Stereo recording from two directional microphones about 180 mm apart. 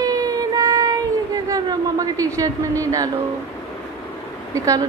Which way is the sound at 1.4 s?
20° right (ahead or behind).